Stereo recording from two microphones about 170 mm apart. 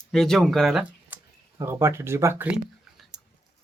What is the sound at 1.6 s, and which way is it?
Speech, 15° right (ahead or behind).